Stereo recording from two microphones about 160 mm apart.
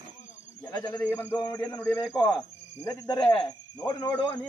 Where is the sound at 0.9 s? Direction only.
10° left (ahead or behind).